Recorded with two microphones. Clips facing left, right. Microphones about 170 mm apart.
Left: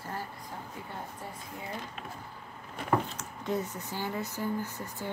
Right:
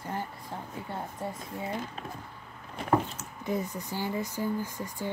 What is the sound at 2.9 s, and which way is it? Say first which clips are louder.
Speech: right 3 dB; 10° right (ahead or behind).